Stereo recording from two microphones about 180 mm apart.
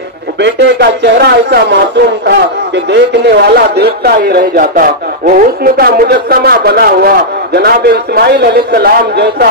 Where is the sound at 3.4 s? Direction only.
65° right (ahead or behind).